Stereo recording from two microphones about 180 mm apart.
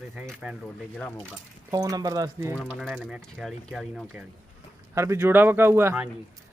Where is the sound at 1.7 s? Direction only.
20° right (ahead or behind).